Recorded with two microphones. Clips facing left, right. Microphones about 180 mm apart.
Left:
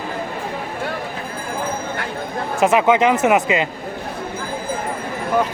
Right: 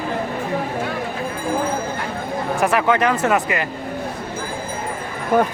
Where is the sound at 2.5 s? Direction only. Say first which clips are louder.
Left 4 dB; 20° left (ahead or behind).